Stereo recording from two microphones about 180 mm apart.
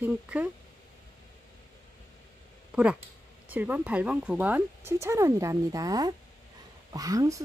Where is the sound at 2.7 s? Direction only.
5° right (ahead or behind).